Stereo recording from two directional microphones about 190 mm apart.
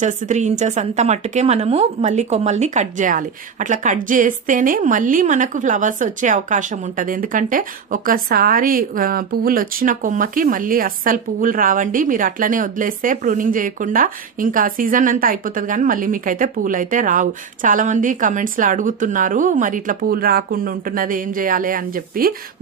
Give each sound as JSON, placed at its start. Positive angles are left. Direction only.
{"t": 0.0, "sound": "a woman's voice", "side_deg": -40}